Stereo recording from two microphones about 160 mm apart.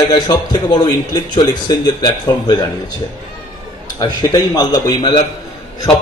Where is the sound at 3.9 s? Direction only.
25° left (ahead or behind).